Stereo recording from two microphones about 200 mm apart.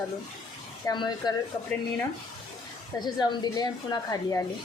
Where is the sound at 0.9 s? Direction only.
20° left (ahead or behind).